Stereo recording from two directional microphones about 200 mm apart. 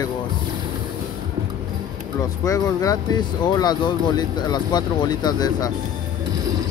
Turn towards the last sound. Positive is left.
turn(degrees=20)  # may be behind; listen again after turning